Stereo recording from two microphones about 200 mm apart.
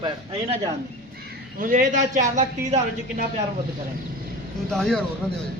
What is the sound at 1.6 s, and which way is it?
A man's voice, 40° right (ahead or behind).